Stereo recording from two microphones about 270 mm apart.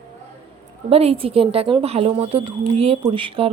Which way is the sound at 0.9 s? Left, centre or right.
Right.